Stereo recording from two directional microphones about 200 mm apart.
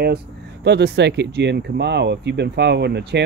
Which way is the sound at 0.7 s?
55° right (ahead or behind).